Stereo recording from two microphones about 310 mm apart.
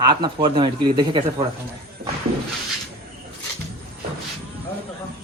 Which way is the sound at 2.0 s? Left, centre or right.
Right.